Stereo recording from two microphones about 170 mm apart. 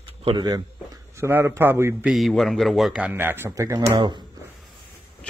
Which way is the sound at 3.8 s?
30° right (ahead or behind).